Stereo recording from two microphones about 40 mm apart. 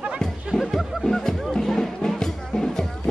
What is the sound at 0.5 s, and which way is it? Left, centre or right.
Music, left.